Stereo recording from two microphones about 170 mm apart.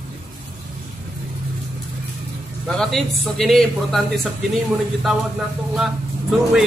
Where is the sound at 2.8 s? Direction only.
Centre (ahead or behind).